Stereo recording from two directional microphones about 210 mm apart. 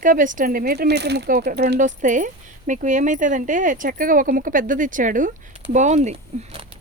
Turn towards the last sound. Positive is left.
turn(degrees=-30)  # may be behind; listen again after turning